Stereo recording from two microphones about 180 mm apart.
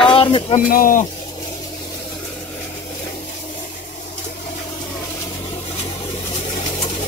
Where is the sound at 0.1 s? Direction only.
30° left (ahead or behind).